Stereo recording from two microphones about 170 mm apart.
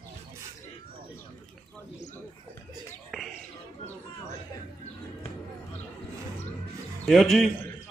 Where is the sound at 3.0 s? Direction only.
Centre (ahead or behind).